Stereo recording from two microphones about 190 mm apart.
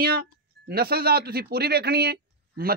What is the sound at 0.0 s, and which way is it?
Speech, 50° right (ahead or behind).